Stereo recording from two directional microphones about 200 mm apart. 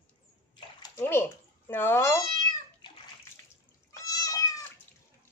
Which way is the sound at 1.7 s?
10° left (ahead or behind).